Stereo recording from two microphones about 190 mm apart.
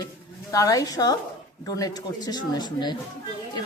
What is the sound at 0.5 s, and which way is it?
A woman's voice, 20° left (ahead or behind).